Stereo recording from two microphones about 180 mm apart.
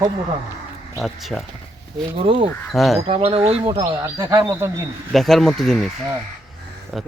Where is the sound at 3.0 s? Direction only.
35° right (ahead or behind); by 4.7 s 15° right (ahead or behind).